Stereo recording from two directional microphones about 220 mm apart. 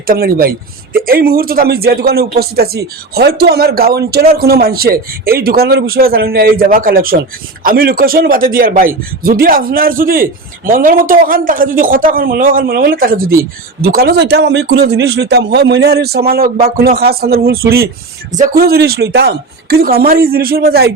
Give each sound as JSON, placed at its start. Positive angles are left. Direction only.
{"t": 0.1, "sound": "a man's voice", "side_deg": -45}